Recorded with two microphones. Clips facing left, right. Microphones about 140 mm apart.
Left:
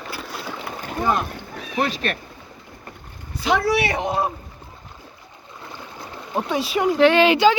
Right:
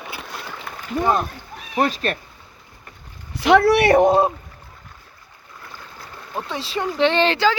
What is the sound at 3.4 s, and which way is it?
Speech, 70° right (ahead or behind).